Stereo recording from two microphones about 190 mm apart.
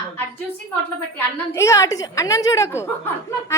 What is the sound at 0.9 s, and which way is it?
A woman's voice, 10° left (ahead or behind).